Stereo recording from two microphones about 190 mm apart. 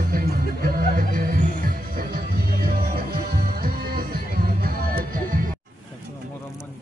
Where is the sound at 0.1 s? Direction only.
50° right (ahead or behind).